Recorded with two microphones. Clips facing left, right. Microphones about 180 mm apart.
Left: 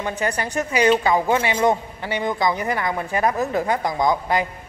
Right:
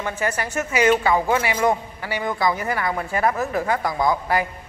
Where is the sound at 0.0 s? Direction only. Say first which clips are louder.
Left 1 dB; 20° left (ahead or behind).